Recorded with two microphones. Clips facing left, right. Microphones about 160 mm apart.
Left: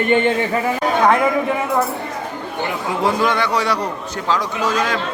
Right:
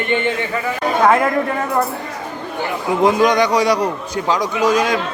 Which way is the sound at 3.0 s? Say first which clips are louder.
Right 5 dB; 15° right (ahead or behind).